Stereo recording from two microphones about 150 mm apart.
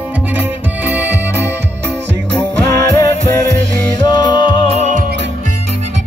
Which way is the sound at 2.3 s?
10° left (ahead or behind).